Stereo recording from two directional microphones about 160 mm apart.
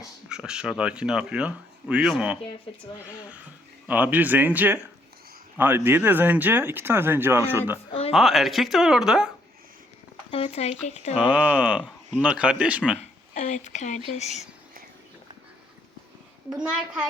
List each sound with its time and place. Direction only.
0.3 s speech: 5° right (ahead or behind)
3.8 s speech: 10° right (ahead or behind)
8.1 s speech: centre (ahead or behind)
10.3 s speech: 40° left (ahead or behind)
11.2 s speech: 10° right (ahead or behind)
13.3 s speech: 50° left (ahead or behind)
16.5 s speech: 5° right (ahead or behind)